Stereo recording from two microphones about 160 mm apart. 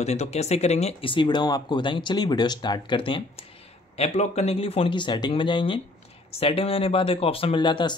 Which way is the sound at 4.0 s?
45° left (ahead or behind).